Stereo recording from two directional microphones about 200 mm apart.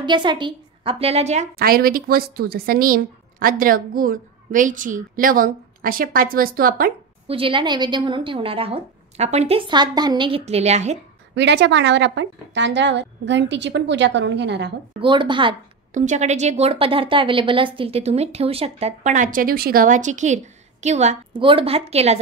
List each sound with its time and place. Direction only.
0.0 s a woman's voice: 25° right (ahead or behind)
1.6 s speech: 50° right (ahead or behind)
7.2 s a woman's voice: 25° right (ahead or behind)
11.3 s a woman's voice: 60° right (ahead or behind)
15.0 s a woman's voice: 25° right (ahead or behind)
15.9 s a woman's voice: 40° right (ahead or behind)